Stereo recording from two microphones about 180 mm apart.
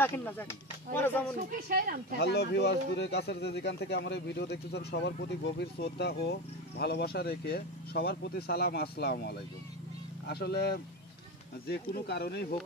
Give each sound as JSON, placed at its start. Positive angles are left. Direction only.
{"t": 0.0, "sound": "speech", "side_deg": 10}
{"t": 1.7, "sound": "speech", "side_deg": -50}
{"t": 2.1, "sound": "speech", "side_deg": 65}